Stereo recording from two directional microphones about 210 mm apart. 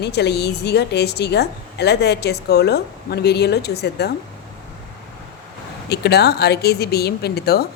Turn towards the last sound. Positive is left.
turn(degrees=50)  # may be behind; listen again after turning